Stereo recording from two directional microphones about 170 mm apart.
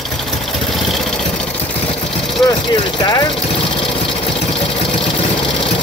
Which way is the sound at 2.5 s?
25° left (ahead or behind).